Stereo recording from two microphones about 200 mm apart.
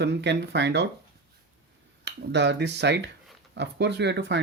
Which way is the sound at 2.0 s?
60° right (ahead or behind).